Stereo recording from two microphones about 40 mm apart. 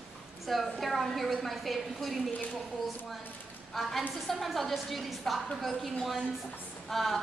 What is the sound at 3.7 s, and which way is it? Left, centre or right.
A woman's voice, centre.